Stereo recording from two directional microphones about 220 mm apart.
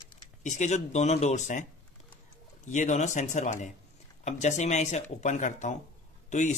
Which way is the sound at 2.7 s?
35° left (ahead or behind).